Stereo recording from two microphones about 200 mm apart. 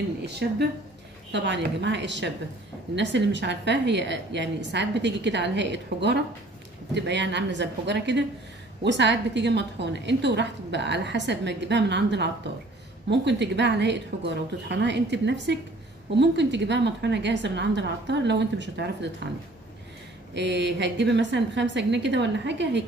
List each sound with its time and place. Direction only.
0.2 s a woman's voice: 55° right (ahead or behind)
20.3 s a woman's voice: 60° right (ahead or behind)